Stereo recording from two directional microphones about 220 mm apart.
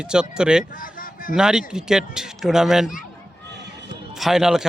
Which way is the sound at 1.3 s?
5° right (ahead or behind).